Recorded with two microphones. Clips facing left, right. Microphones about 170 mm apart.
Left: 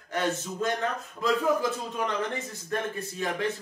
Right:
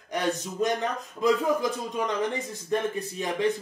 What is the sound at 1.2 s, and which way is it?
Speech, 15° right (ahead or behind).